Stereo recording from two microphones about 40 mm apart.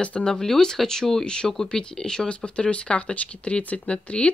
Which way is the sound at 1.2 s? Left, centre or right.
Left.